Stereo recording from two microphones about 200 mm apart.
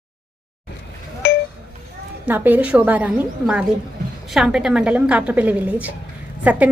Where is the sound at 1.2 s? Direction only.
60° left (ahead or behind).